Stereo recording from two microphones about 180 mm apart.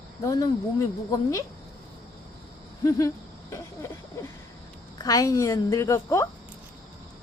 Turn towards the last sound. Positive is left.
turn(degrees=15)  # may be behind; listen again after turning